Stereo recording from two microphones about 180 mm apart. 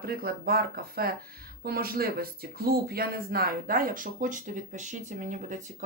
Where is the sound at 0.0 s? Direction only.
55° right (ahead or behind).